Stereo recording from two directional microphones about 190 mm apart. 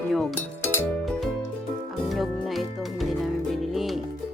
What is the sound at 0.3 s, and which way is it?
Music, 15° left (ahead or behind).